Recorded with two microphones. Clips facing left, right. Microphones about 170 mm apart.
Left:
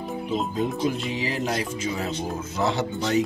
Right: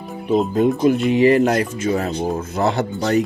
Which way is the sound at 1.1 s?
60° right (ahead or behind).